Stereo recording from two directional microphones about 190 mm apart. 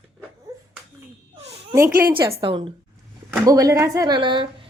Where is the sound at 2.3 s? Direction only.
25° right (ahead or behind).